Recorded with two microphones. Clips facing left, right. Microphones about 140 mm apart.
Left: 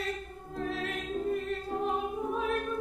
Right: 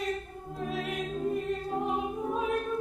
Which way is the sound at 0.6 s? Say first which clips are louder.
Right 2 dB; 15° right (ahead or behind).